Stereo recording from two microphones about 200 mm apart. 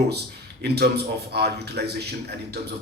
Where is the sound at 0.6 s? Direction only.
55° right (ahead or behind).